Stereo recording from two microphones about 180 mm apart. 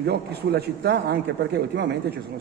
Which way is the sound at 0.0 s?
65° right (ahead or behind).